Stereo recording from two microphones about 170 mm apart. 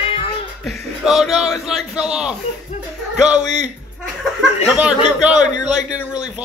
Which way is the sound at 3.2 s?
45° right (ahead or behind).